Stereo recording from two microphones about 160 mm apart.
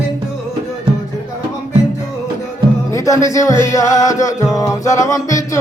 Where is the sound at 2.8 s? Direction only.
20° left (ahead or behind).